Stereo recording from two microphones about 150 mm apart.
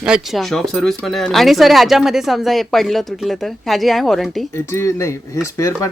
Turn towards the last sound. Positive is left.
turn(degrees=20)  # may be behind; listen again after turning